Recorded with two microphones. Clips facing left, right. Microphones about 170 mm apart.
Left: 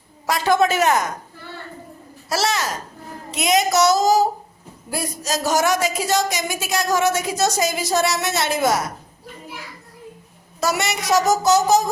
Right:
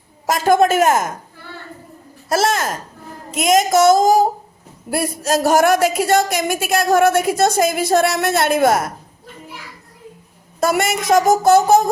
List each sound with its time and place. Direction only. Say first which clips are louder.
0.3 s speech: right 4 dB; 45° right (ahead or behind)
2.3 s a woman's voice: right 4 dB; 50° right (ahead or behind)
10.6 s speech: right 5 dB; 50° right (ahead or behind)